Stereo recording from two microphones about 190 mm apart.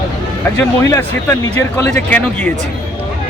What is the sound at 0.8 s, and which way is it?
Speech, 15° left (ahead or behind).